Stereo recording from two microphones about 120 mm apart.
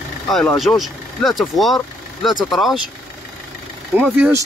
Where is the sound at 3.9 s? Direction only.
10° right (ahead or behind).